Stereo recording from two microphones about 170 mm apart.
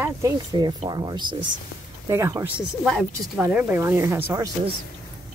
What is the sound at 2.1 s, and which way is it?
Speech, 15° right (ahead or behind).